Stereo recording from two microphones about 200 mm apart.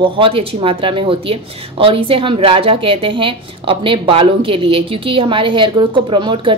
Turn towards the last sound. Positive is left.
turn(degrees=-25)  # may be behind; listen again after turning